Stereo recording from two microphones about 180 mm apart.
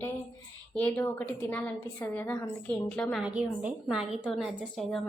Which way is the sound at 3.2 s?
5° right (ahead or behind).